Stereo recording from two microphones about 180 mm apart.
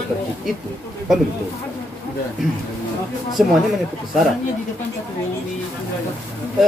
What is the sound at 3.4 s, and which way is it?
Speech, 5° right (ahead or behind).